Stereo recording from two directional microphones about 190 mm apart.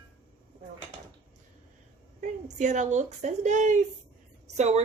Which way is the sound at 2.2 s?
40° right (ahead or behind).